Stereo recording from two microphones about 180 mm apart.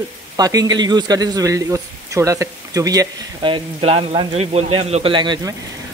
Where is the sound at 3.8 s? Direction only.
35° right (ahead or behind).